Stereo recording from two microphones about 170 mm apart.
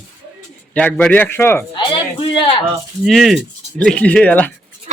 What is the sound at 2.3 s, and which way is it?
Speech, 30° left (ahead or behind).